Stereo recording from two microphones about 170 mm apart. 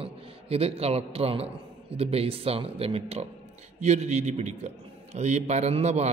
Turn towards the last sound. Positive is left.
turn(degrees=-40)  # may be behind; listen again after turning